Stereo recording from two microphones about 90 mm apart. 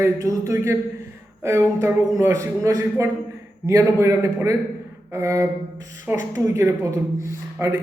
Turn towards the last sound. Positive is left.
turn(degrees=-30)  # may be behind; listen again after turning